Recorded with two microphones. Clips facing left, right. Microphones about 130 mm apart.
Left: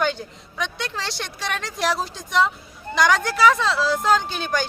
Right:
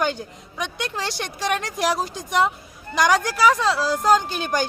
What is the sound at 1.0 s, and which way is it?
Speech, 50° right (ahead or behind).